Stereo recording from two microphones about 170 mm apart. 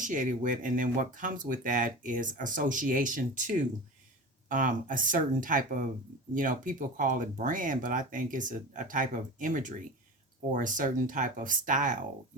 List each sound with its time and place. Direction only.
0.0 s speech: 50° right (ahead or behind)